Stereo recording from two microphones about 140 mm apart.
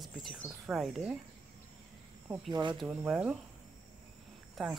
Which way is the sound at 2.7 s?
5° right (ahead or behind).